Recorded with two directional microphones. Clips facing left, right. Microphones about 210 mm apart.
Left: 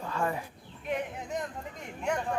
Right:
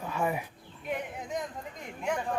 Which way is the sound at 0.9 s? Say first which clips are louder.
Left 1 dB; centre (ahead or behind).